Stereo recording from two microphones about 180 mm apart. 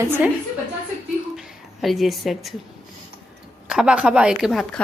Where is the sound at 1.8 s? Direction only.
Centre (ahead or behind).